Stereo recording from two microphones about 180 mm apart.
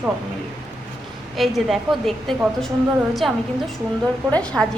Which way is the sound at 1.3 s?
Centre (ahead or behind).